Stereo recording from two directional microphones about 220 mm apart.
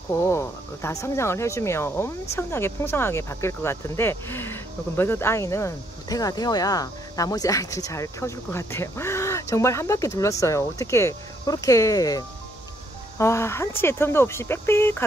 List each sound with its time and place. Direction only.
0.1 s speech: 10° left (ahead or behind)